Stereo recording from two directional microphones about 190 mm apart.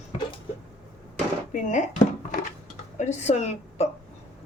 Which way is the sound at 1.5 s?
40° left (ahead or behind).